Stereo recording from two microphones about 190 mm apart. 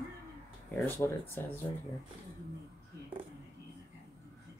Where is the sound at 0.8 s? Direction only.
10° left (ahead or behind).